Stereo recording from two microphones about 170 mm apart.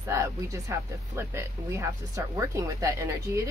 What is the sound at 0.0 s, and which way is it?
Speech, 15° right (ahead or behind).